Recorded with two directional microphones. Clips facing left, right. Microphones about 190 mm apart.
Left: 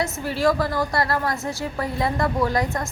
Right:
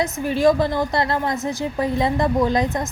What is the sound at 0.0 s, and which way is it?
A woman's voice, 20° right (ahead or behind).